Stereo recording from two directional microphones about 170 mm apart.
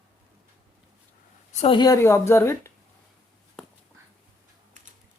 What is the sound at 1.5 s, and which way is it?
A woman's voice, 30° left (ahead or behind).